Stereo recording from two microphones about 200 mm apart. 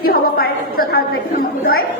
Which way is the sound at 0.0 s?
50° left (ahead or behind).